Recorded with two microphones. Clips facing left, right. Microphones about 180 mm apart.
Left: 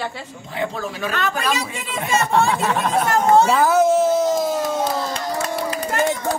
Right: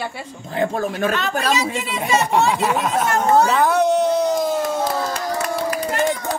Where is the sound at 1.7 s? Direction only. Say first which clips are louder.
Right 3 dB; 50° left (ahead or behind).